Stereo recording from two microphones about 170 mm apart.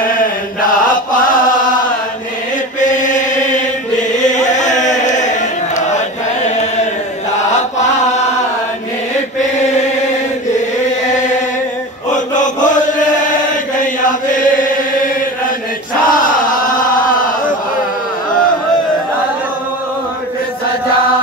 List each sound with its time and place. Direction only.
2.8 s chant: 50° left (ahead or behind)
12.4 s chant: 50° left (ahead or behind)
16.1 s chant: 50° left (ahead or behind)